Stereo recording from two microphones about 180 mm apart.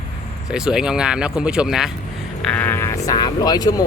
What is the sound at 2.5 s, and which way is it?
Speech, 10° left (ahead or behind).